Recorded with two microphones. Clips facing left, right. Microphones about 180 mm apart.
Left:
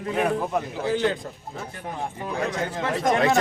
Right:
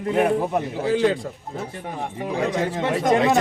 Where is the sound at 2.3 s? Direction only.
25° right (ahead or behind).